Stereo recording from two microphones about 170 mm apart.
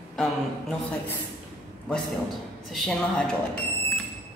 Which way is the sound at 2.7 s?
5° left (ahead or behind).